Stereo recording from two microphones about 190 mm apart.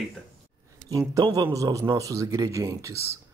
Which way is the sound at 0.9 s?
20° right (ahead or behind).